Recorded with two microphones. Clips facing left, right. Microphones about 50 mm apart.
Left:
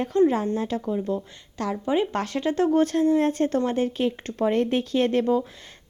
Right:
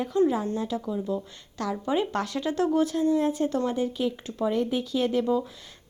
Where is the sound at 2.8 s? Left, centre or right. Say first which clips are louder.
Left 3 dB; left.